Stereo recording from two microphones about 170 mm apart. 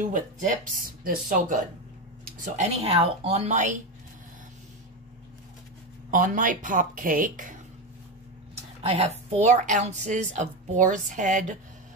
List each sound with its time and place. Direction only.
0.0 s a woman's voice: 50° right (ahead or behind)
6.0 s a woman's voice: 50° right (ahead or behind)
8.8 s a woman's voice: 40° right (ahead or behind)